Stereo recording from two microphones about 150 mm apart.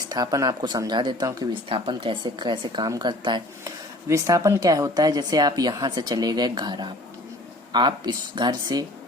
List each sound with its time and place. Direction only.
0.1 s speech: 25° right (ahead or behind)
4.1 s speech: 20° right (ahead or behind)